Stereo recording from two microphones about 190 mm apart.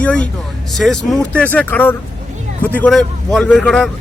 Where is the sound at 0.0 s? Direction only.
5° left (ahead or behind).